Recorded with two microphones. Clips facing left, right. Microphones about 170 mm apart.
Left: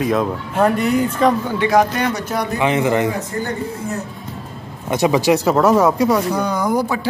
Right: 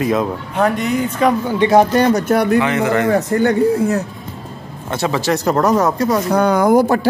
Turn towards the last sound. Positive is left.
turn(degrees=-50)  # may be behind; listen again after turning